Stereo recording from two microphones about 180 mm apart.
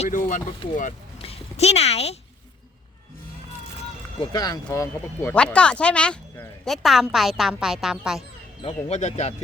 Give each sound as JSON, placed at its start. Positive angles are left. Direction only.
{"t": 0.0, "sound": "speech", "side_deg": 45}
{"t": 1.2, "sound": "a sound", "side_deg": 35}
{"t": 4.2, "sound": "speech", "side_deg": 20}
{"t": 8.6, "sound": "speech", "side_deg": 40}